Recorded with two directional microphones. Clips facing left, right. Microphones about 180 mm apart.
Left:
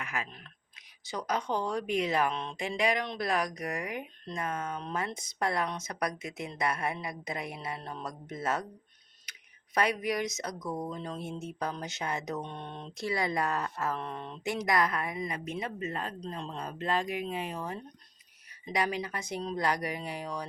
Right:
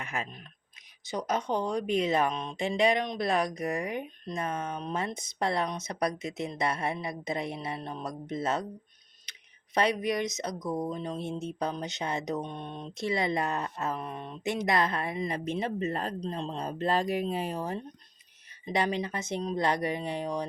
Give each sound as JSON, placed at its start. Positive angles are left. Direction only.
{"t": 0.0, "sound": "speech", "side_deg": -25}
{"t": 9.7, "sound": "speech", "side_deg": -25}